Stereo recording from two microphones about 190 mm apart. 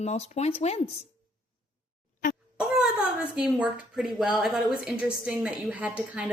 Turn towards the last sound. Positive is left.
turn(degrees=-5)  # may be behind; listen again after turning